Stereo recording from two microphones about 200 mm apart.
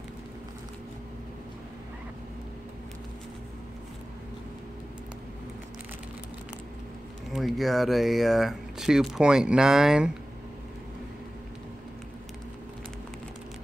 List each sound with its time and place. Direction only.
7.3 s speech: centre (ahead or behind)